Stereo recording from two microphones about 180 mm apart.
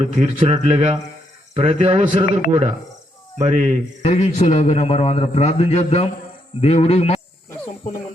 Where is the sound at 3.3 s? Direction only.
40° right (ahead or behind).